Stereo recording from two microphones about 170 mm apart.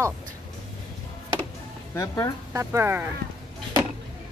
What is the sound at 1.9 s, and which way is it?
Speech, 15° left (ahead or behind).